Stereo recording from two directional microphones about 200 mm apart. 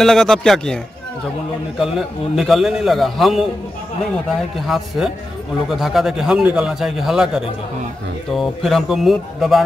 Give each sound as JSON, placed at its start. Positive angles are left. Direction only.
{"t": 0.0, "sound": "a man's voice", "side_deg": 0}
{"t": 1.8, "sound": "a man's voice", "side_deg": 0}
{"t": 4.6, "sound": "a man's voice", "side_deg": 0}